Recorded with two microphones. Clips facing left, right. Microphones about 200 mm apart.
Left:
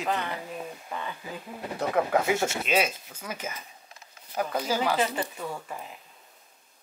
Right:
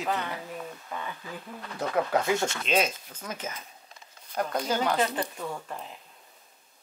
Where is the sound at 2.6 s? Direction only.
5° left (ahead or behind).